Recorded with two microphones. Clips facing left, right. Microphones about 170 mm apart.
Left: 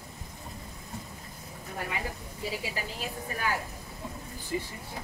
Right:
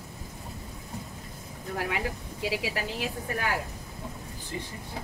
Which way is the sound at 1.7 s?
80° right.